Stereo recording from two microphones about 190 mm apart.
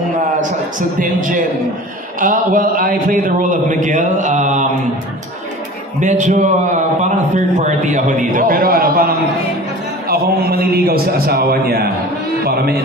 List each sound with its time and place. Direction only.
0.4 s speech: 45° right (ahead or behind)
5.9 s a man's voice: 40° right (ahead or behind); by 12.8 s 55° right (ahead or behind)